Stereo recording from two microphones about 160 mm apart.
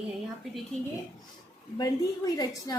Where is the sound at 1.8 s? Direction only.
20° left (ahead or behind).